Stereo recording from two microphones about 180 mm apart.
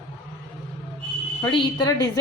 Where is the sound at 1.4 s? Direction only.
25° left (ahead or behind).